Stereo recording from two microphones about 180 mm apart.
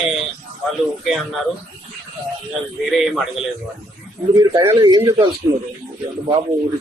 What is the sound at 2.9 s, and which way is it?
Speech, centre (ahead or behind).